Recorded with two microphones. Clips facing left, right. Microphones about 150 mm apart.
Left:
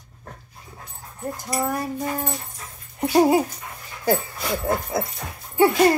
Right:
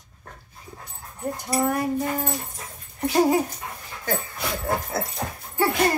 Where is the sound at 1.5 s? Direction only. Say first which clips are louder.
Right 2 dB; centre (ahead or behind).